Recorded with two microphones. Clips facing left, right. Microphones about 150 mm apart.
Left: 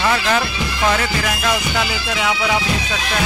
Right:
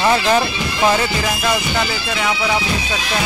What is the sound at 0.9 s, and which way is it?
Music, 10° right (ahead or behind).